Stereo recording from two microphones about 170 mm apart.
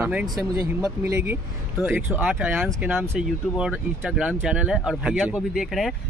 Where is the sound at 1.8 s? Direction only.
10° right (ahead or behind).